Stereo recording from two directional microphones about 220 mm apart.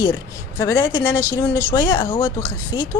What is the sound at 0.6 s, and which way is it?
Speech, 15° left (ahead or behind).